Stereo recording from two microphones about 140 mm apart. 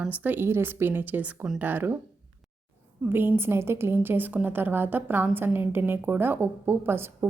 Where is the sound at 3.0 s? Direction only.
15° right (ahead or behind).